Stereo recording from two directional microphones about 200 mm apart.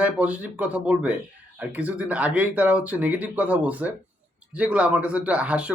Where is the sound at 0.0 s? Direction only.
5° right (ahead or behind).